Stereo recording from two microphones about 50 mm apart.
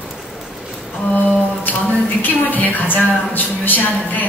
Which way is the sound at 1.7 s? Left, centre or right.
Left.